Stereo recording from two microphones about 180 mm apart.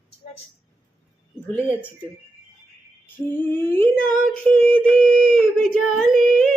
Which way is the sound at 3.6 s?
15° left (ahead or behind).